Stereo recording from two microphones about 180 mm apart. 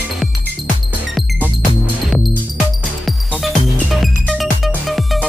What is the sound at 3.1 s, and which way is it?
Music, centre (ahead or behind).